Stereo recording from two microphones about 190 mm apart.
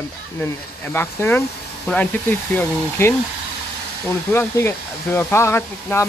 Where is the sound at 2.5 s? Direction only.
10° left (ahead or behind).